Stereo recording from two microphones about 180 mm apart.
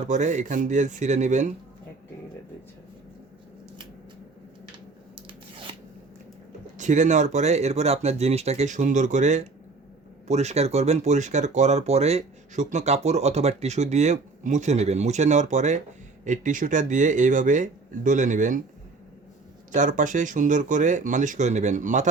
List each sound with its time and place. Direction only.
0.1 s speech: 40° right (ahead or behind)
6.7 s speech: 40° right (ahead or behind)
19.7 s speech: 45° right (ahead or behind)